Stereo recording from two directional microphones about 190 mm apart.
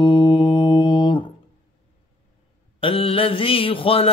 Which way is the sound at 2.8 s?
30° left (ahead or behind).